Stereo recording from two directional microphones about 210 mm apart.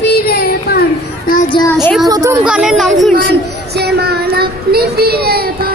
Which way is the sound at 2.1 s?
15° right (ahead or behind).